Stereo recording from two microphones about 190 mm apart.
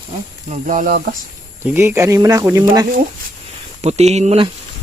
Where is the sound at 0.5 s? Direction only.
40° right (ahead or behind).